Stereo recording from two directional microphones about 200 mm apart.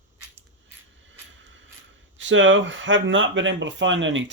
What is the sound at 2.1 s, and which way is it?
Speech, 70° right (ahead or behind).